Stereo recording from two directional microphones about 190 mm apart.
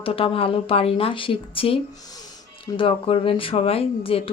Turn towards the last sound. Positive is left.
turn(degrees=30)  # may be behind; listen again after turning